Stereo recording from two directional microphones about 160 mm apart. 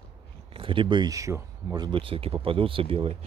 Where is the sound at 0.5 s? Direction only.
30° right (ahead or behind); by 1.8 s 15° right (ahead or behind).